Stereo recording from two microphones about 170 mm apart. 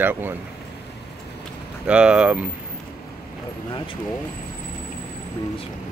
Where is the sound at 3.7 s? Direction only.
30° left (ahead or behind).